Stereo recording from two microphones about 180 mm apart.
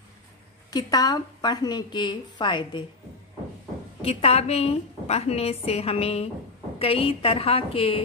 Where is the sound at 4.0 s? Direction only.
35° left (ahead or behind).